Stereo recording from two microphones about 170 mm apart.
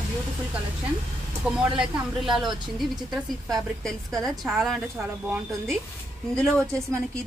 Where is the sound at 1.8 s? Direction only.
Centre (ahead or behind).